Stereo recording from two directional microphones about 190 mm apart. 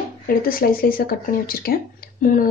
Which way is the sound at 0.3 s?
50° left (ahead or behind).